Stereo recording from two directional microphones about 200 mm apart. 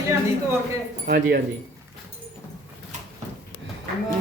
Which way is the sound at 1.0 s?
45° right (ahead or behind).